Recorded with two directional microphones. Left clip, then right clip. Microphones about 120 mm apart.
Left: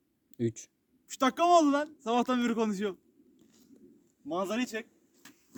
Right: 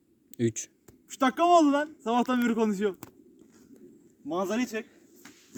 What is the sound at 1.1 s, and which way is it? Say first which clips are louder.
Speech: right 2 dB; 20° left (ahead or behind).